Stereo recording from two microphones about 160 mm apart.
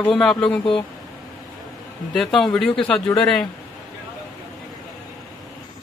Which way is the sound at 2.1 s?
Centre (ahead or behind).